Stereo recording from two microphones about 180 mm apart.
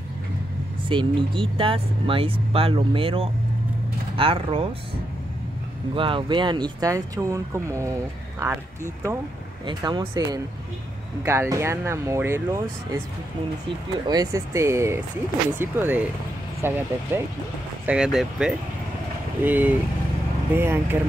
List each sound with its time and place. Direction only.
0.8 s speech: 30° right (ahead or behind)
5.9 s speech: 30° right (ahead or behind)
14.0 s speech: 20° right (ahead or behind)
17.8 s speech: 5° right (ahead or behind)